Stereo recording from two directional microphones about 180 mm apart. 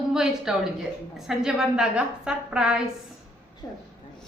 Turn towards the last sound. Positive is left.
turn(degrees=20)  # may be behind; listen again after turning